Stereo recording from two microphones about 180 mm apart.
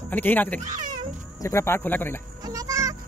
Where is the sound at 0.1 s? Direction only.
10° left (ahead or behind).